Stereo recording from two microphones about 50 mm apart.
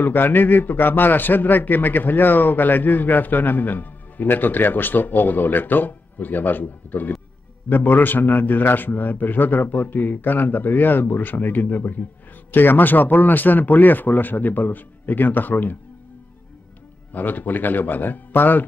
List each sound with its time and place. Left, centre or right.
0.0 s a man's voice: left
17.1 s a man's voice: left